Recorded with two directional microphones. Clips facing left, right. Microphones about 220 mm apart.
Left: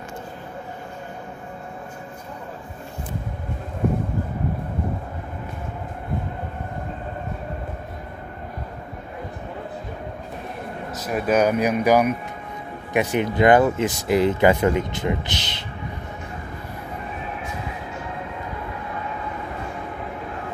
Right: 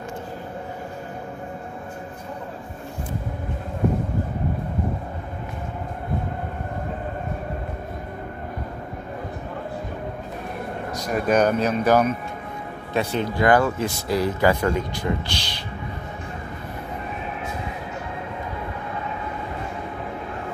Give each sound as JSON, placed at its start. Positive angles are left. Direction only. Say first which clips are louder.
{"t": 10.9, "sound": "speech", "louder": "even", "side_deg": 5}